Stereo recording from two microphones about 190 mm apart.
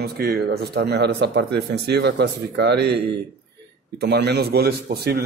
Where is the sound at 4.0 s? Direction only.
60° right (ahead or behind).